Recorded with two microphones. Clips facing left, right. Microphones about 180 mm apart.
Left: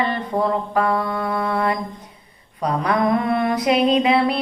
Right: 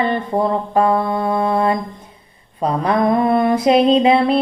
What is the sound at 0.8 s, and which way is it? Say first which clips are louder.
Mantra: right 6 dB; 25° right (ahead or behind).